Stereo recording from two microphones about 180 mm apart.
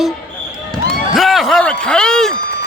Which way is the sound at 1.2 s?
Centre (ahead or behind).